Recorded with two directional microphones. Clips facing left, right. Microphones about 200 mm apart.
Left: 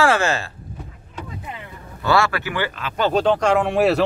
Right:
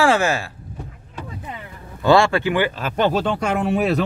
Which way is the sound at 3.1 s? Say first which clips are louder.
Left 4 dB; 5° right (ahead or behind).